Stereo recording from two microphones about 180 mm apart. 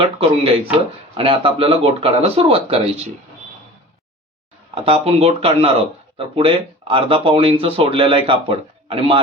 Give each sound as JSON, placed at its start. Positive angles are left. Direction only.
{"t": 0.0, "sound": "speech", "side_deg": -30}
{"t": 4.7, "sound": "speech", "side_deg": -30}